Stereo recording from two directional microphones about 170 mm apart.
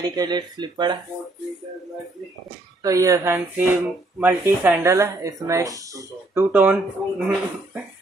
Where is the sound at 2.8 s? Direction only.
20° right (ahead or behind).